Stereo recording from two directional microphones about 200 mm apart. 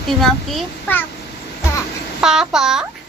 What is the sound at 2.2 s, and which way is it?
Speech, 5° right (ahead or behind).